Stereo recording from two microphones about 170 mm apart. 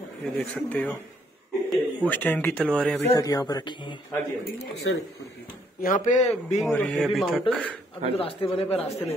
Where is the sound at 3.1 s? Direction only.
20° left (ahead or behind).